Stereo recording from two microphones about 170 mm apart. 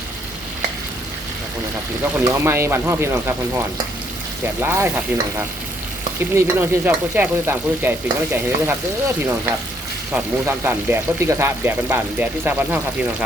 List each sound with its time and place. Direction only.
2.1 s speech: 15° right (ahead or behind)
6.3 s speech: 10° right (ahead or behind)
10.1 s speech: 10° right (ahead or behind)